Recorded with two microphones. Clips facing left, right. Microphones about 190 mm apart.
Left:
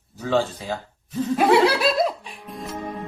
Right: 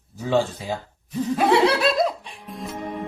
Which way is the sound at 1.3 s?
5° left (ahead or behind).